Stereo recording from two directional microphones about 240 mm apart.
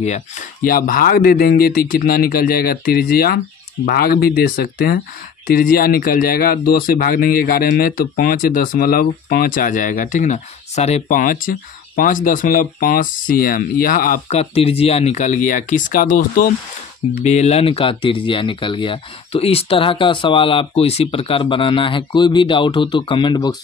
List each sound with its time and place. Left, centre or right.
0.7 s speech: left; by 23.5 s centre